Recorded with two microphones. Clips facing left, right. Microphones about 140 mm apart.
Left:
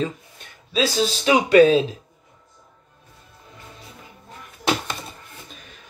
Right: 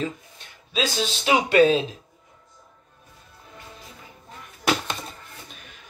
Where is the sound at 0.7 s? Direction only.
40° left (ahead or behind).